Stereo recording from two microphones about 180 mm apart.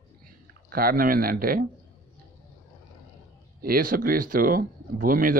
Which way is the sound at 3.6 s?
55° right (ahead or behind).